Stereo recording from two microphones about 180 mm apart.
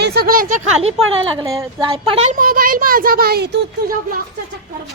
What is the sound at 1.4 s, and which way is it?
Speech, 20° right (ahead or behind).